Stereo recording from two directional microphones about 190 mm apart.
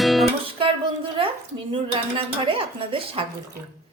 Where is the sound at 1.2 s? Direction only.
30° right (ahead or behind).